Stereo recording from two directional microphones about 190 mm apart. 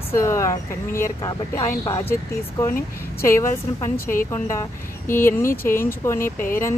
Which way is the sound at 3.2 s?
15° left (ahead or behind).